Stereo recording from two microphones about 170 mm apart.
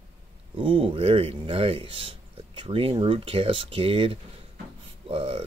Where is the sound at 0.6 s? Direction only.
30° right (ahead or behind).